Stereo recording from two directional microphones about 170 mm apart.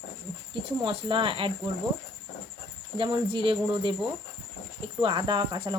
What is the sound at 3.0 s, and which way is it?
Speech, 30° right (ahead or behind).